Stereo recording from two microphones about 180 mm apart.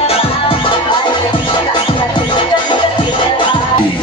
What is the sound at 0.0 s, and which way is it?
Music, 35° left (ahead or behind).